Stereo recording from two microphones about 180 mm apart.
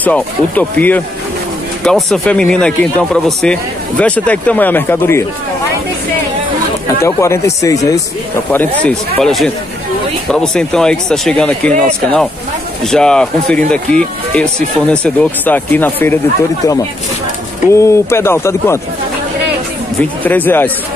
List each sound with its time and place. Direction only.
0.0 s speech: 10° left (ahead or behind)
7.0 s speech: 15° left (ahead or behind)
8.5 s speech: 10° left (ahead or behind)
17.7 s speech: 15° left (ahead or behind)
20.2 s speech: 10° left (ahead or behind)